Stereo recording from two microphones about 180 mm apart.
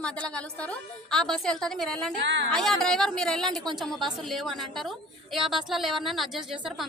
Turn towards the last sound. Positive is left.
turn(degrees=0)  # may be behind; listen again after turning